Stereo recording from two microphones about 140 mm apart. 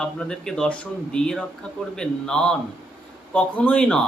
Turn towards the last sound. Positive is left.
turn(degrees=10)  # may be behind; listen again after turning